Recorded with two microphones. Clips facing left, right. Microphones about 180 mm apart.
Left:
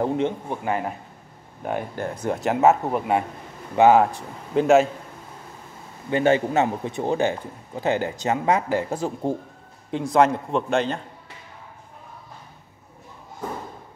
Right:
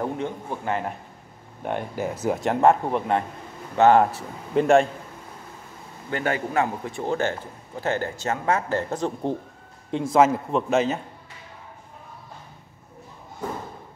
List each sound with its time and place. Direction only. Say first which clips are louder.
0.0 s speech: left 5 dB; 20° left (ahead or behind)
4.0 s speech: even; centre (ahead or behind)
6.0 s speech: left 7 dB; 20° left (ahead or behind); by 11.0 s 5° right (ahead or behind)